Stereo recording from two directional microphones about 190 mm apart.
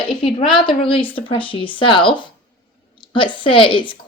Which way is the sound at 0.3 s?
25° left (ahead or behind).